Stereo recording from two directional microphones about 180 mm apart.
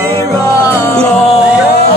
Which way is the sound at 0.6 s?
15° left (ahead or behind).